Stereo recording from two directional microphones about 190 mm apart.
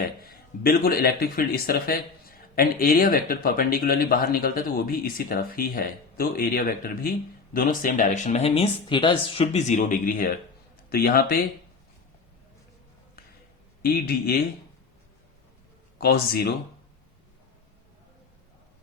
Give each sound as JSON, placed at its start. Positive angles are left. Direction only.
{"t": 0.6, "sound": "a man's voice", "side_deg": 55}
{"t": 13.8, "sound": "a man's voice", "side_deg": 55}
{"t": 16.0, "sound": "speech", "side_deg": 55}